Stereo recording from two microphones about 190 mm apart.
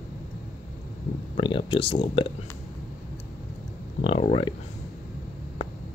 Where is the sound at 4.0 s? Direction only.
30° left (ahead or behind).